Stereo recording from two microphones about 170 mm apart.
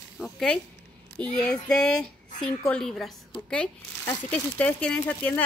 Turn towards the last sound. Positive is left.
turn(degrees=5)  # may be behind; listen again after turning